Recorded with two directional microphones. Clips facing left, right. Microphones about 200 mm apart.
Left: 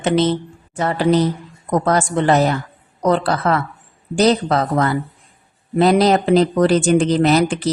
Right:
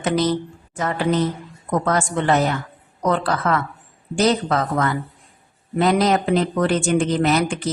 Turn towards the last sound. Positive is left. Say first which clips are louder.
# left 4 dB
turn(degrees=35)  # may be behind; listen again after turning